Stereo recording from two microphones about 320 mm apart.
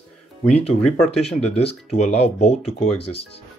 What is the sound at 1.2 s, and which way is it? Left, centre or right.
Speech, centre.